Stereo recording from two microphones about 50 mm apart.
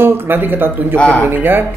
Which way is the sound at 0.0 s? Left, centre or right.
Right.